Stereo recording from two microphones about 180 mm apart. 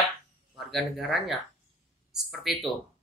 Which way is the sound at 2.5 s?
Centre (ahead or behind).